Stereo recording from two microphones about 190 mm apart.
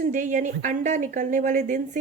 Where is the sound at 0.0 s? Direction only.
40° right (ahead or behind).